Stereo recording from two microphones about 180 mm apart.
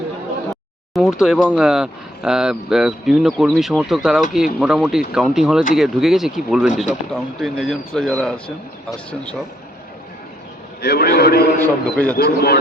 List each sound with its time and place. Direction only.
0.9 s speech: 5° right (ahead or behind)
10.8 s a man's voice: 60° left (ahead or behind)
11.6 s a man's voice: 10° left (ahead or behind)
12.1 s a man's voice: 60° left (ahead or behind)